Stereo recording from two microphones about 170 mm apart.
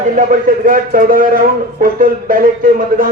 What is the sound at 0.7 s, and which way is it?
Speech, 55° right (ahead or behind).